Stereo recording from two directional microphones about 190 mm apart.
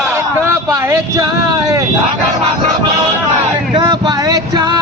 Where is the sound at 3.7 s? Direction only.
20° right (ahead or behind).